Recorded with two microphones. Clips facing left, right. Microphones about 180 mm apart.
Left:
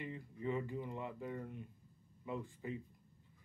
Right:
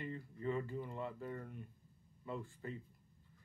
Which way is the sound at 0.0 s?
15° left (ahead or behind).